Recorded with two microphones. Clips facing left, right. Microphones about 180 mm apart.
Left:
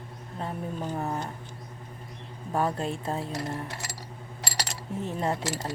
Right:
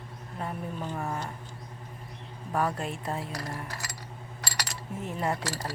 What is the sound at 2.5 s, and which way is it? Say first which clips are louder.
Speech: left 2 dB; 25° left (ahead or behind).